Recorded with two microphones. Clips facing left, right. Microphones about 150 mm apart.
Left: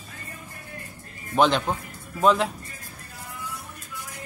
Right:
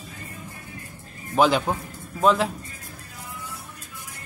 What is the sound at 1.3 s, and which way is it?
Speech, 5° right (ahead or behind).